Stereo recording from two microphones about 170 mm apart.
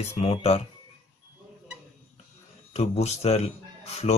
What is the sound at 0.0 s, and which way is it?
Speech, 40° left (ahead or behind).